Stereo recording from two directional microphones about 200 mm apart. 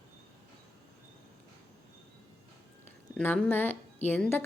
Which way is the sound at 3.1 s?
10° left (ahead or behind).